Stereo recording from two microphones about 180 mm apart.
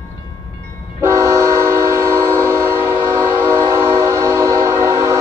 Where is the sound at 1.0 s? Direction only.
15° right (ahead or behind).